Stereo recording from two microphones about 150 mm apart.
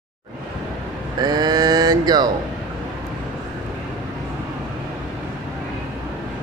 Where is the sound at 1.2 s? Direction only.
25° right (ahead or behind).